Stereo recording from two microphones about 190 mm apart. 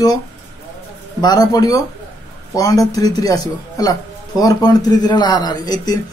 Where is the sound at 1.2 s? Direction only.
20° left (ahead or behind).